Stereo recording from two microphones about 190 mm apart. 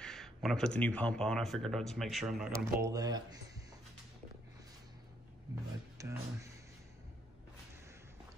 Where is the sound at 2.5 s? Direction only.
15° right (ahead or behind).